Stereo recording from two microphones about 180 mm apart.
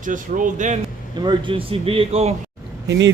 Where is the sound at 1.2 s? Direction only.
25° right (ahead or behind).